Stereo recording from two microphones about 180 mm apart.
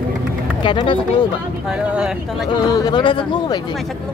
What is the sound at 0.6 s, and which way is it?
Speech, 25° left (ahead or behind).